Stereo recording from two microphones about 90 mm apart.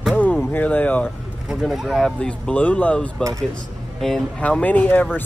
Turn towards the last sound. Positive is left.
turn(degrees=20)  # may be behind; listen again after turning